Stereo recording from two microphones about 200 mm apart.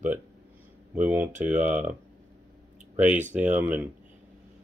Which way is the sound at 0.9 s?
10° right (ahead or behind).